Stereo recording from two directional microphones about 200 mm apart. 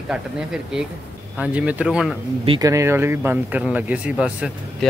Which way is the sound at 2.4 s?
20° right (ahead or behind).